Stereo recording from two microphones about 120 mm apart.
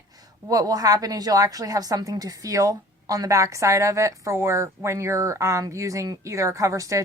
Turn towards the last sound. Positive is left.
turn(degrees=-25)  # may be behind; listen again after turning